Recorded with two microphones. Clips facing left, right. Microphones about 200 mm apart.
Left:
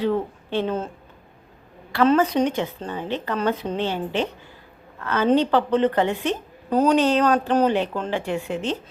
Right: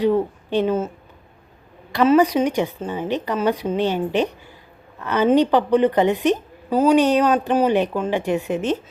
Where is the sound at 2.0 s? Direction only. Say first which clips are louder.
Right 3 dB; 10° right (ahead or behind).